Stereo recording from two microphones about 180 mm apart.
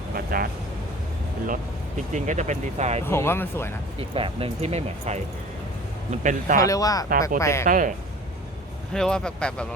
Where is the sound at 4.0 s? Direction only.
30° right (ahead or behind).